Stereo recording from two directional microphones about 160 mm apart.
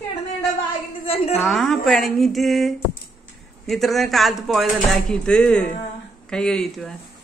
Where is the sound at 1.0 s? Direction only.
35° left (ahead or behind).